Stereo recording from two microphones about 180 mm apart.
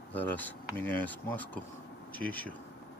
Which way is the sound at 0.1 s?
10° left (ahead or behind).